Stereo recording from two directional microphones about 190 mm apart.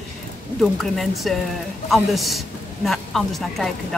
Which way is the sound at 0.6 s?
Centre (ahead or behind).